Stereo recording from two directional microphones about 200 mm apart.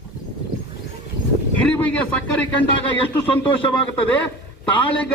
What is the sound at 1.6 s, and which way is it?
Speech, 5° left (ahead or behind).